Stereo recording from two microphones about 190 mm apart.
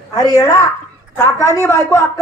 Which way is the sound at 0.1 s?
20° left (ahead or behind).